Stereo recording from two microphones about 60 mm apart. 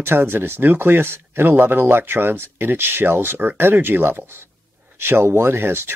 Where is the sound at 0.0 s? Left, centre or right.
Right.